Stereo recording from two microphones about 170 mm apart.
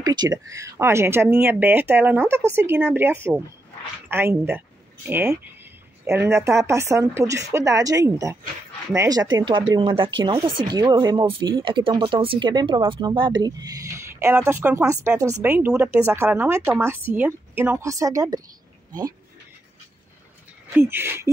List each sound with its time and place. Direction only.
0.0 s speech: 25° right (ahead or behind)
15.4 s speech: 10° right (ahead or behind)
20.7 s speech: 15° right (ahead or behind)